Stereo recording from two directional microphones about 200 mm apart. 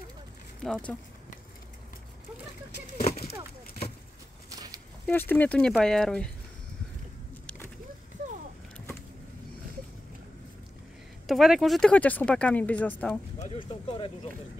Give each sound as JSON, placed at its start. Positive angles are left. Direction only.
{"t": 0.6, "sound": "speech", "side_deg": 5}
{"t": 3.0, "sound": "speech", "side_deg": 35}
{"t": 4.5, "sound": "walk", "side_deg": -20}
{"t": 5.0, "sound": "speech", "side_deg": 10}
{"t": 7.4, "sound": "a sound", "side_deg": 10}
{"t": 11.2, "sound": "speech", "side_deg": 0}
{"t": 13.4, "sound": "speech", "side_deg": 25}